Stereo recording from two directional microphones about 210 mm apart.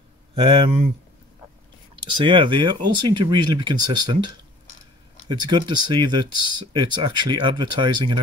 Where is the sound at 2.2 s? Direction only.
25° right (ahead or behind).